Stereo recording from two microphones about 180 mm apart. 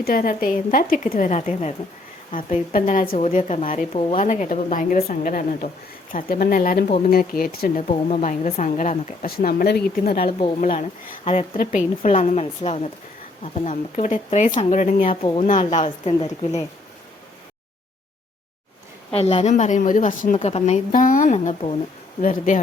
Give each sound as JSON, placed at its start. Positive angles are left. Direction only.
{"t": 0.0, "sound": "a woman's voice", "side_deg": 50}
{"t": 7.9, "sound": "a woman's voice", "side_deg": 40}
{"t": 10.2, "sound": "a woman's voice", "side_deg": 35}
{"t": 11.3, "sound": "a woman's voice", "side_deg": 45}
{"t": 15.1, "sound": "a woman's voice", "side_deg": 35}
{"t": 19.1, "sound": "a woman's voice", "side_deg": 35}
{"t": 20.3, "sound": "a woman's voice", "side_deg": 35}
{"t": 22.2, "sound": "a woman's voice", "side_deg": 45}